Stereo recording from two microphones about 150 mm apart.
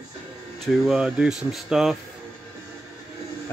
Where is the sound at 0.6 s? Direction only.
Centre (ahead or behind).